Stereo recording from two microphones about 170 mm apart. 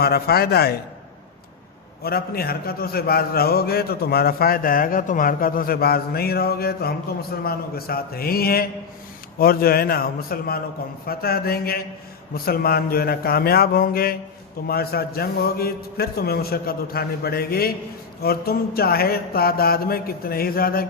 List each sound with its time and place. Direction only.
0.0 s a man's voice: 65° left (ahead or behind)
2.0 s a man's voice: 65° left (ahead or behind)